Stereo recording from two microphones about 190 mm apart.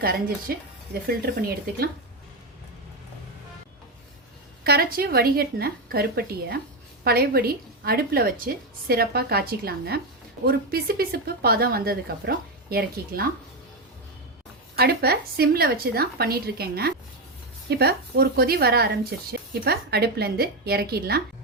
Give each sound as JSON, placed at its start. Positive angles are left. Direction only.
{"t": 0.0, "sound": "a woman's voice", "side_deg": -50}
{"t": 4.6, "sound": "a woman's voice", "side_deg": -55}
{"t": 14.8, "sound": "speech", "side_deg": -55}